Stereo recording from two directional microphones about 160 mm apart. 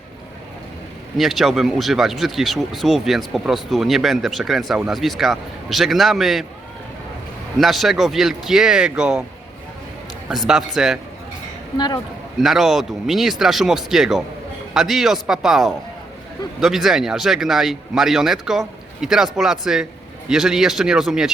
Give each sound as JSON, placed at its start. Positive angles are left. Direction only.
{"t": 1.2, "sound": "speech", "side_deg": 0}
{"t": 7.6, "sound": "speech", "side_deg": 0}
{"t": 10.2, "sound": "speech", "side_deg": -5}
{"t": 12.4, "sound": "speech", "side_deg": 0}